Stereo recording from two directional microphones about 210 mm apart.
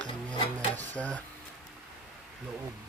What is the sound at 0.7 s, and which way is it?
Filing, 5° left (ahead or behind).